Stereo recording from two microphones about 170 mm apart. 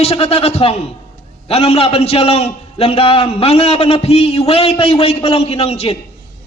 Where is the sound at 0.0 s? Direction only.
35° left (ahead or behind).